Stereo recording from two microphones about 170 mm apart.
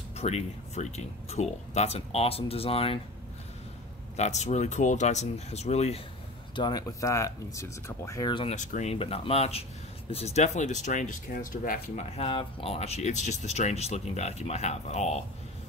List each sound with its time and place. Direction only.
0.2 s speech: 40° left (ahead or behind)
4.2 s speech: 40° left (ahead or behind)
6.5 s speech: 25° left (ahead or behind)
8.5 s speech: 45° left (ahead or behind)